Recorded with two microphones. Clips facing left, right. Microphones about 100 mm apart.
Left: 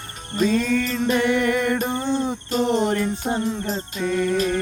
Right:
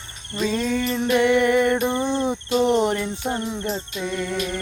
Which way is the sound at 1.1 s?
20° right (ahead or behind).